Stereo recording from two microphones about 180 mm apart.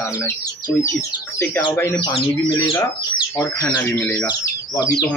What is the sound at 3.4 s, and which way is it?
Speech, 15° left (ahead or behind).